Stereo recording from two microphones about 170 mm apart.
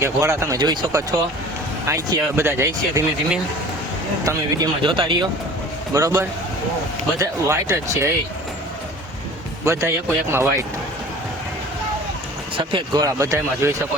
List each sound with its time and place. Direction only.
0.0 s a man's voice: 15° right (ahead or behind)
4.3 s a man's voice: 20° right (ahead or behind)
9.6 s speech: 15° right (ahead or behind)
12.5 s a man's voice: 25° right (ahead or behind)